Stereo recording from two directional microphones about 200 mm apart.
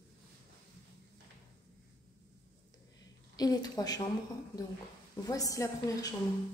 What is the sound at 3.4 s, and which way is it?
Speech, 20° left (ahead or behind).